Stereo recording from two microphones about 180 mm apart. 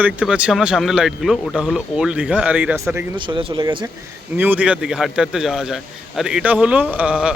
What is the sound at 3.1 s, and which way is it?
Speech, 25° right (ahead or behind).